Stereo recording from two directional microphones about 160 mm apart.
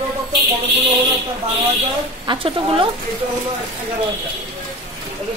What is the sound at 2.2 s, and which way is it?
Speech, 30° right (ahead or behind).